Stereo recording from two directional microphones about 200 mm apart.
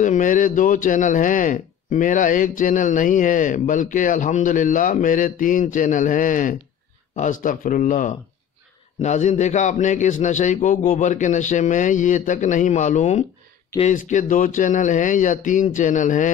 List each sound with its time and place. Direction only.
0.0 s speech: 40° left (ahead or behind)